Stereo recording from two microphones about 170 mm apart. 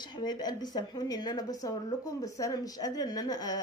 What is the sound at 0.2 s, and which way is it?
A woman's voice, 25° left (ahead or behind).